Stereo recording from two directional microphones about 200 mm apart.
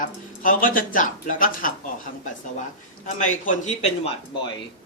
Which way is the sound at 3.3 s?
40° left (ahead or behind).